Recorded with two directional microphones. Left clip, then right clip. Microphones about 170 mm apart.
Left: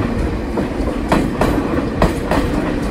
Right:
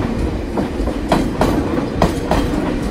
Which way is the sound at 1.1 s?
15° right (ahead or behind).